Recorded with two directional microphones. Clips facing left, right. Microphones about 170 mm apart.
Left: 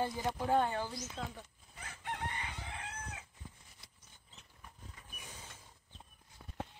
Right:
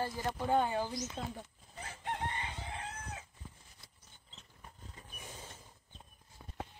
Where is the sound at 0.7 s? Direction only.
15° right (ahead or behind).